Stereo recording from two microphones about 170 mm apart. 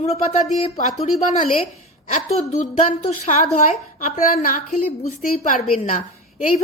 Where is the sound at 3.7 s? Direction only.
50° left (ahead or behind).